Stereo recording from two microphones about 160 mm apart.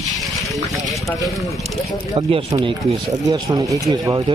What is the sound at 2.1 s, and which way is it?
Speech, 35° right (ahead or behind).